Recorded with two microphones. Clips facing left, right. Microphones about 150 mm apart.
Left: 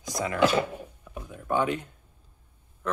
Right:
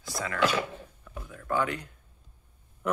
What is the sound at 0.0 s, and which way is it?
Speech, 20° left (ahead or behind).